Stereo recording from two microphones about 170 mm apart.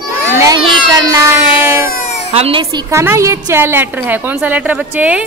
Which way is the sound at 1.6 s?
15° right (ahead or behind).